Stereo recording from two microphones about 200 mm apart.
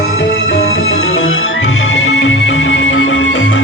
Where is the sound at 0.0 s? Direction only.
60° left (ahead or behind).